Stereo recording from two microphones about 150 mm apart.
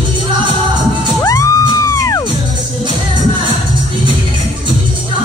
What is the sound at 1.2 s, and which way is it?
Music, 20° left (ahead or behind).